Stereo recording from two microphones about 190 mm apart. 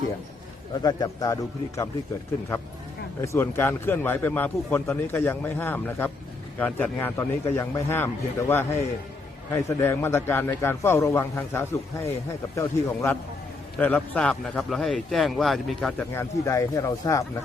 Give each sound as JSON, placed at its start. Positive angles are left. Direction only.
{"t": 0.8, "sound": "a man's voice", "side_deg": 20}
{"t": 3.2, "sound": "a man's voice", "side_deg": 10}
{"t": 16.4, "sound": "a man's voice", "side_deg": 15}